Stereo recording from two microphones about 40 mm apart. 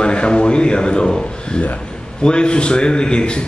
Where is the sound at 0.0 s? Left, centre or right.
Left.